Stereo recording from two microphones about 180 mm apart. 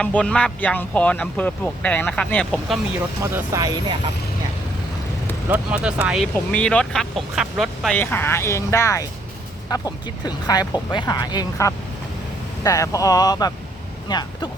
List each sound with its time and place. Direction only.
0.0 s speech: 5° left (ahead or behind)
3.3 s speech: 20° right (ahead or behind)
5.5 s speech: 5° right (ahead or behind)
6.3 s speech: 5° left (ahead or behind); by 14.5 s 25° left (ahead or behind)